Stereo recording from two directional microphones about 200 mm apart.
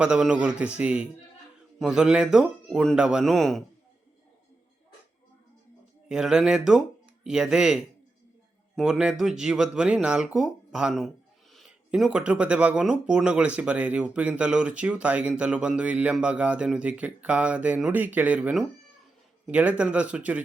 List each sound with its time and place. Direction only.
0.0 s speech: 5° right (ahead or behind)
6.1 s speech: 5° right (ahead or behind)